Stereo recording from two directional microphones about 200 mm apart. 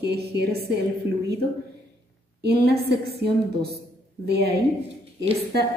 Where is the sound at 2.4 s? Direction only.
55° right (ahead or behind).